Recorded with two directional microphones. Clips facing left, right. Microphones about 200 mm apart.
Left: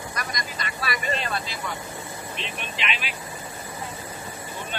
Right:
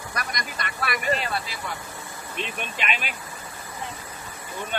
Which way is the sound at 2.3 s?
50° right (ahead or behind).